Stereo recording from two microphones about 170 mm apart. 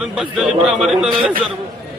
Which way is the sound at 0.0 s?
5° right (ahead or behind).